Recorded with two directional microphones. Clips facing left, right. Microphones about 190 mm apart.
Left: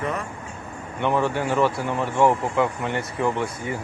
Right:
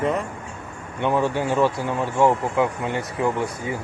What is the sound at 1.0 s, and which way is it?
Speech, 15° right (ahead or behind).